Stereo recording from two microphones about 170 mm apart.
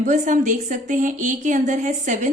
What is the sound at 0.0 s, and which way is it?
A woman's voice, 45° right (ahead or behind).